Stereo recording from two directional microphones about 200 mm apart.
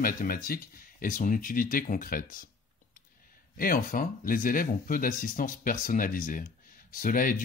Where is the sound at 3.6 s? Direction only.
45° left (ahead or behind).